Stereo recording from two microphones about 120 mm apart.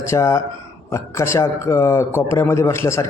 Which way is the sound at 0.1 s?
25° left (ahead or behind).